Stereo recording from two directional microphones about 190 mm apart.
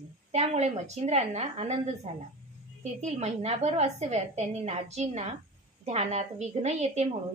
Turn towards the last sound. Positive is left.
turn(degrees=-35)  # may be behind; listen again after turning